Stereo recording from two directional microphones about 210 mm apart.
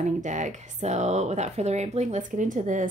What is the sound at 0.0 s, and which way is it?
Speech, 35° right (ahead or behind).